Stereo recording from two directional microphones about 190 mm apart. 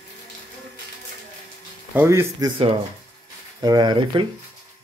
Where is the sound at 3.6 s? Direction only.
20° right (ahead or behind).